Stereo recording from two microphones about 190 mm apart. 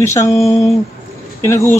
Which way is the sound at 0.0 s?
15° left (ahead or behind).